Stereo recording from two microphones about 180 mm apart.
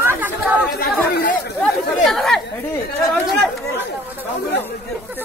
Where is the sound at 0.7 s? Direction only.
60° left (ahead or behind).